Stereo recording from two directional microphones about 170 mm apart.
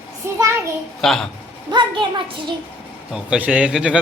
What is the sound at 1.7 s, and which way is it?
Speech, 30° right (ahead or behind).